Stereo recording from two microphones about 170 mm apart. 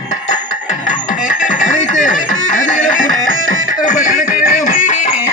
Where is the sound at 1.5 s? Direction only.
45° left (ahead or behind).